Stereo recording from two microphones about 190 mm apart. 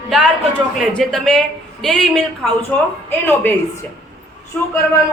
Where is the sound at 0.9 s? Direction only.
Centre (ahead or behind).